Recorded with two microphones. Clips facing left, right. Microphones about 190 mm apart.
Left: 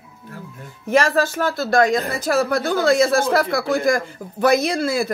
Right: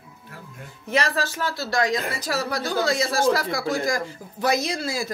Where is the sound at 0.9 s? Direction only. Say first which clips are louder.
Left 7 dB; 50° left (ahead or behind).